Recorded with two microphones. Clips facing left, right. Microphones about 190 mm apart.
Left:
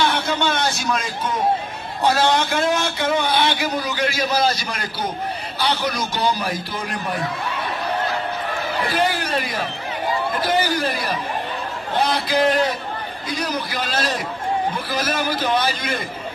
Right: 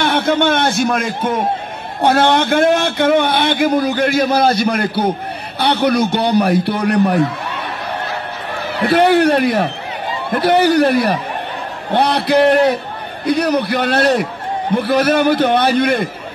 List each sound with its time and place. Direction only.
0.0 s a man's voice: 55° right (ahead or behind)
8.8 s a man's voice: 65° right (ahead or behind)